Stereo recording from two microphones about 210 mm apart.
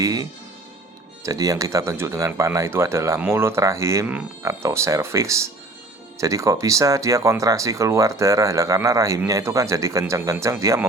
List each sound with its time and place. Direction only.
0.0 s speech: 15° right (ahead or behind)